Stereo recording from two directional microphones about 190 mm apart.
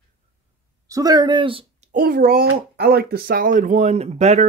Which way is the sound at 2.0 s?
50° right (ahead or behind).